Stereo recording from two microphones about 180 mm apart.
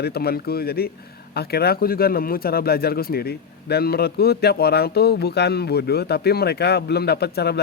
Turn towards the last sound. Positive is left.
turn(degrees=65)  # may be behind; listen again after turning